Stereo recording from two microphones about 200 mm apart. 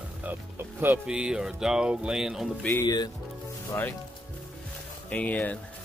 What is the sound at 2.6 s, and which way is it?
Speech, 15° left (ahead or behind).